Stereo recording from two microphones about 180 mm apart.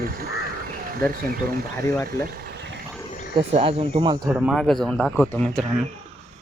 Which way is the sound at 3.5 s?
30° right (ahead or behind).